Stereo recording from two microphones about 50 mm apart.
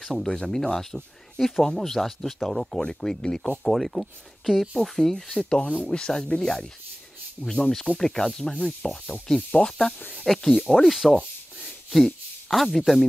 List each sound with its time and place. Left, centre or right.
0.0 s speech: centre
3.6 s speech: centre
11.6 s a sound: centre